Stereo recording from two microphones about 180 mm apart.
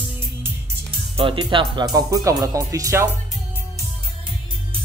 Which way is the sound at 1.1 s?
30° right (ahead or behind).